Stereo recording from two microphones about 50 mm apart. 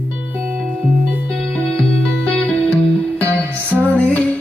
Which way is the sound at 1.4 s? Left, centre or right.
Centre.